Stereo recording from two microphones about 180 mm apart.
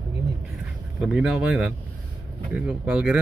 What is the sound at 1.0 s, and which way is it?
Speech, 5° right (ahead or behind).